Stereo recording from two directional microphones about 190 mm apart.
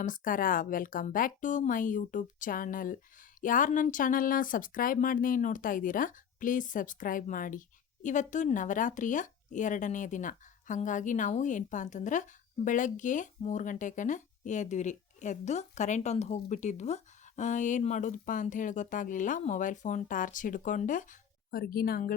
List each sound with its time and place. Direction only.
0.0 s a woman's voice: 45° left (ahead or behind)